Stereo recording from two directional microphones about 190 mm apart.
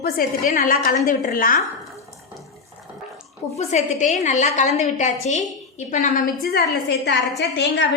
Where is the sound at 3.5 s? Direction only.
35° left (ahead or behind); by 7.1 s 60° left (ahead or behind).